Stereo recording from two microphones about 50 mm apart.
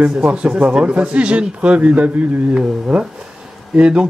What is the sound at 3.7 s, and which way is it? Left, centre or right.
Speech, right.